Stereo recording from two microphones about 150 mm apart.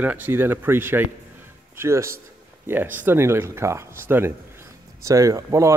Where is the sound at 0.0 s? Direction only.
10° right (ahead or behind).